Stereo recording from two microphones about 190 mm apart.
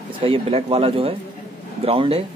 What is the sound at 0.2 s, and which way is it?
A man's voice, 30° right (ahead or behind).